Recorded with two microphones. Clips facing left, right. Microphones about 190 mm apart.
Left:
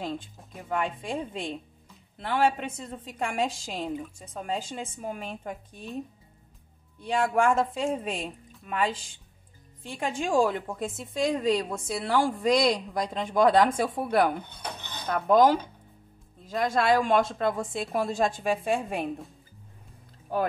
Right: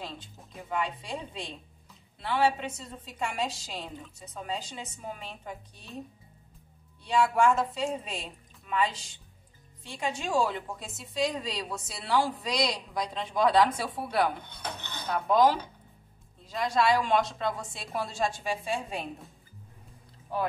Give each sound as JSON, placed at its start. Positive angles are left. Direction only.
{"t": 0.7, "sound": "a woman's voice", "side_deg": 50}
{"t": 7.0, "sound": "a woman's voice", "side_deg": 50}
{"t": 9.9, "sound": "a woman's voice", "side_deg": 50}